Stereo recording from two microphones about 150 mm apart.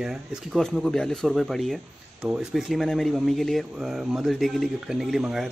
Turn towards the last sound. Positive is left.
turn(degrees=-5)  # may be behind; listen again after turning